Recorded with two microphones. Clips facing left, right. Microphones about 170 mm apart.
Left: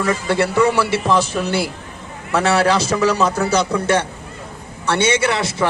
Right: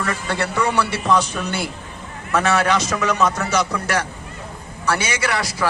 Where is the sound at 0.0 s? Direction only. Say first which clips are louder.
Left 6 dB; 25° left (ahead or behind).